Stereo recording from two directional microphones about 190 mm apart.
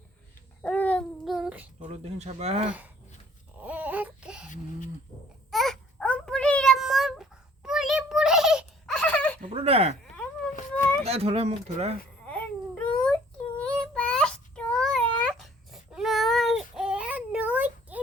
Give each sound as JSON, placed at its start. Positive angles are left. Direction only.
{"t": 0.6, "sound": "babbling", "side_deg": 5}
{"t": 1.8, "sound": "speech", "side_deg": -35}
{"t": 2.6, "sound": "speech", "side_deg": -10}
{"t": 3.6, "sound": "baby cry", "side_deg": -10}
{"t": 4.4, "sound": "a sound", "side_deg": 40}
{"t": 5.5, "sound": "baby cry", "side_deg": 0}
{"t": 9.5, "sound": "sheep", "side_deg": -30}
{"t": 11.0, "sound": "speech", "side_deg": -35}
{"t": 12.2, "sound": "babbling", "side_deg": 5}
{"t": 13.6, "sound": "child singing", "side_deg": 5}